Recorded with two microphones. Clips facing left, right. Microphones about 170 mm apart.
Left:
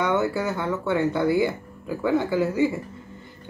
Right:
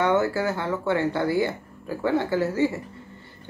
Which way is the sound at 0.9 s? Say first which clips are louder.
Left 3 dB; 20° left (ahead or behind).